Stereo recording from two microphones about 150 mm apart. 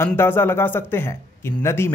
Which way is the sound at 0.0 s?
15° left (ahead or behind).